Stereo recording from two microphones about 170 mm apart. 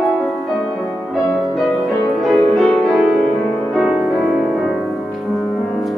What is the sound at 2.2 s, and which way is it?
Music, centre (ahead or behind).